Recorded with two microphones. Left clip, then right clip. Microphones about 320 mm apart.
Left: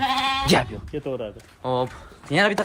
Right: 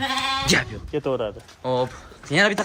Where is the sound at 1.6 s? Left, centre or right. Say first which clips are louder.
Right 1 dB; centre.